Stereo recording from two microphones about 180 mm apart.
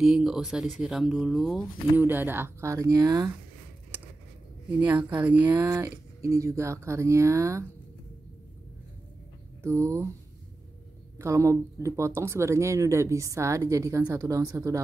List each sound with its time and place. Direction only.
0.0 s speech: centre (ahead or behind)
2.0 s speech: 10° right (ahead or behind)
4.7 s speech: 10° right (ahead or behind)
9.6 s speech: 15° right (ahead or behind)
11.1 s speech: 15° right (ahead or behind)